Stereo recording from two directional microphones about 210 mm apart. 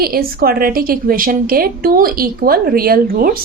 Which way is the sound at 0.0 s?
45° right (ahead or behind).